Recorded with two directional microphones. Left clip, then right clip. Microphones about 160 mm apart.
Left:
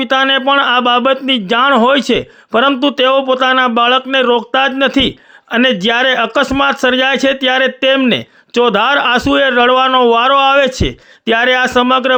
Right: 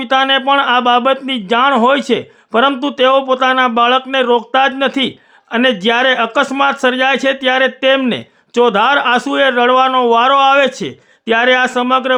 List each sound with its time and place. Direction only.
0.0 s speech: 20° left (ahead or behind)